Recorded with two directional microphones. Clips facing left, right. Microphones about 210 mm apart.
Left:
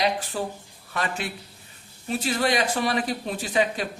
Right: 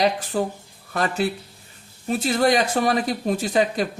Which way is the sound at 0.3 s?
45° right (ahead or behind).